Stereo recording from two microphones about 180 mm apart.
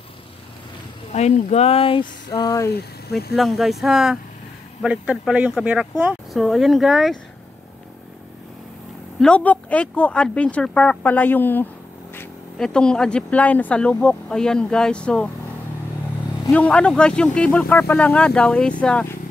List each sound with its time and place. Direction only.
1.1 s speech: 40° left (ahead or behind); by 2.7 s 20° left (ahead or behind)
2.7 s speech: 60° left (ahead or behind)
3.3 s speech: centre (ahead or behind)
9.2 s speech: 5° left (ahead or behind)
16.4 s speech: 5° left (ahead or behind)